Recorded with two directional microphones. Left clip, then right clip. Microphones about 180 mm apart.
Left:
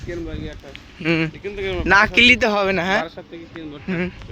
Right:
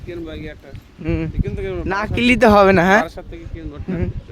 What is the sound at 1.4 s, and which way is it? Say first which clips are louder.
Speech: left 1 dB; 70° right (ahead or behind).